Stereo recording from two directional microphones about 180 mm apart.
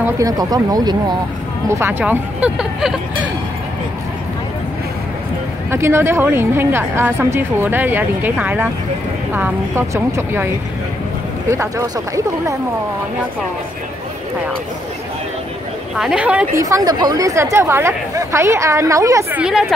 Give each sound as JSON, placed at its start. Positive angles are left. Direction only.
{"t": 0.0, "sound": "speech", "side_deg": -20}
{"t": 5.7, "sound": "speech", "side_deg": -15}
{"t": 16.0, "sound": "speech", "side_deg": -5}
{"t": 16.6, "sound": "speech", "side_deg": -20}